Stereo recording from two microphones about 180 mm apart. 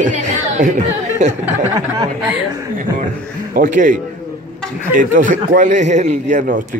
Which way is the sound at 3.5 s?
50° right (ahead or behind).